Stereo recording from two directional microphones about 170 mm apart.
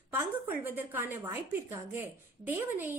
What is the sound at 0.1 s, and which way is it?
A woman's voice, 10° right (ahead or behind).